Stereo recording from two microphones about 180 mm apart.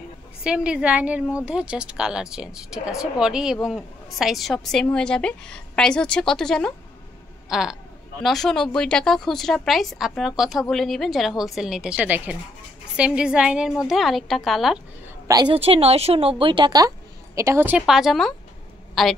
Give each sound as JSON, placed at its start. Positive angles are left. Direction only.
{"t": 0.4, "sound": "a woman's voice", "side_deg": -5}
{"t": 15.2, "sound": "a woman's voice", "side_deg": -20}
{"t": 15.5, "sound": "speech", "side_deg": -30}